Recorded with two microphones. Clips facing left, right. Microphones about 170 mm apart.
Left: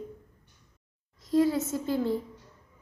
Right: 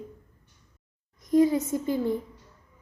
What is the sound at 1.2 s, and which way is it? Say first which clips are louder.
Speech: right 3 dB; 15° right (ahead or behind).